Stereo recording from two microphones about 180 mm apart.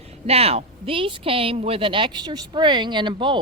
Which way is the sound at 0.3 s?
35° right (ahead or behind).